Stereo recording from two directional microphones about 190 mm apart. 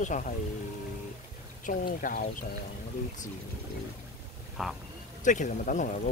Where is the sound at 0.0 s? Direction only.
40° left (ahead or behind).